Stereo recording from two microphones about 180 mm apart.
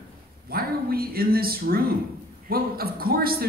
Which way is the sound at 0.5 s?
55° right (ahead or behind).